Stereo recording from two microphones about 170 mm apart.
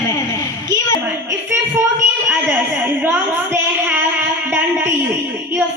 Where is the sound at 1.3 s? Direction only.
15° right (ahead or behind).